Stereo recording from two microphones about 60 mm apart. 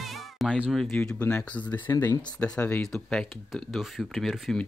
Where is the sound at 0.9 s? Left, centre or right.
Left.